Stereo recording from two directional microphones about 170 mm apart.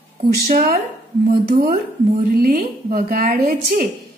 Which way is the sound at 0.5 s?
55° right (ahead or behind).